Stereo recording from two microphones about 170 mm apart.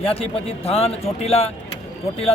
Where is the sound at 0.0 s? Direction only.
35° left (ahead or behind).